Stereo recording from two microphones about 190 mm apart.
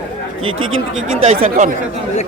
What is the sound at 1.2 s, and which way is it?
Speech, 35° right (ahead or behind).